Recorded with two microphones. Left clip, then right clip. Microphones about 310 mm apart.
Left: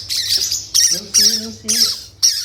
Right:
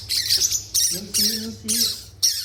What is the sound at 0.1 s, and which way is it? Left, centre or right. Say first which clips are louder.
Squawk: left 3 dB; centre.